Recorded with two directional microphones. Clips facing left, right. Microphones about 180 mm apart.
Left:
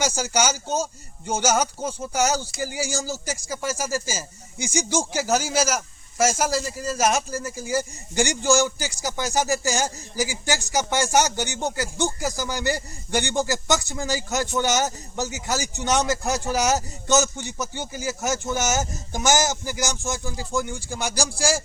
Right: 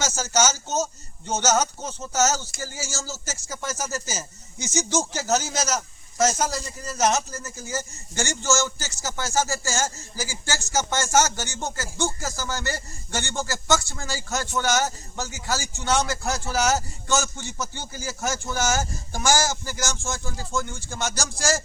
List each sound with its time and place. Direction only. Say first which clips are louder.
0.0 s speech: left 1 dB; 15° left (ahead or behind)